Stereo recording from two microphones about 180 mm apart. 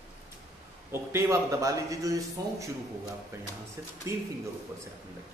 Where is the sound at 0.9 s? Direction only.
15° right (ahead or behind).